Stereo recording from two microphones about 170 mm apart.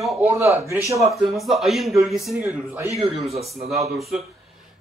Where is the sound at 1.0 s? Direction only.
Centre (ahead or behind).